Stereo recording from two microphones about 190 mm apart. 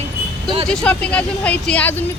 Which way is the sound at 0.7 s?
5° left (ahead or behind).